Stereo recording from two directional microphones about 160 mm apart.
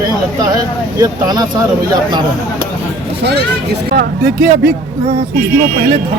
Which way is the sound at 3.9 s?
70° right (ahead or behind).